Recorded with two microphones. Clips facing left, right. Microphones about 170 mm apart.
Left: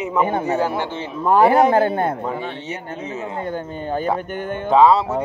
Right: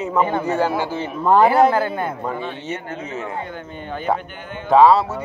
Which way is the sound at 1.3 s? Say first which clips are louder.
Even; 10° left (ahead or behind).